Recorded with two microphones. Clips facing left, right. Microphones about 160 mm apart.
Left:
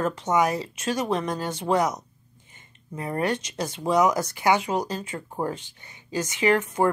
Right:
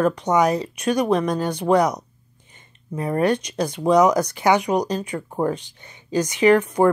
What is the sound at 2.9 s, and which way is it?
Speech, 25° right (ahead or behind).